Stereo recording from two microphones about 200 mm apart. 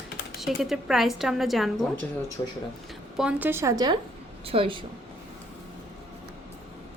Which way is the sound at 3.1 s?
5° right (ahead or behind).